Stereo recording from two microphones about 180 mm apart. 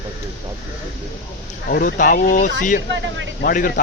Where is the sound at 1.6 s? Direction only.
50° left (ahead or behind).